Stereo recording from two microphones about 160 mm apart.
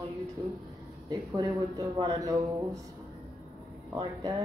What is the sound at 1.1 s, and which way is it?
Speech, 25° right (ahead or behind).